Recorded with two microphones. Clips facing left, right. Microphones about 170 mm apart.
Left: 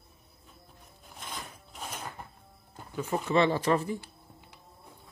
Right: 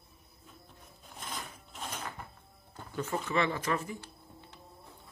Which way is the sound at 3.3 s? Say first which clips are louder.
Left 7 dB; 30° left (ahead or behind).